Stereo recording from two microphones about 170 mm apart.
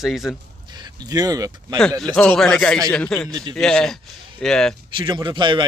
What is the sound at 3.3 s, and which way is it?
Speech, 25° right (ahead or behind).